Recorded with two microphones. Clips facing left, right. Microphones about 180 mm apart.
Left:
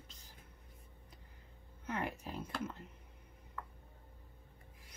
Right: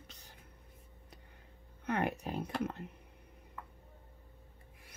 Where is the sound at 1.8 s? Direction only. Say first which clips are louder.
Right 6 dB; 65° right (ahead or behind).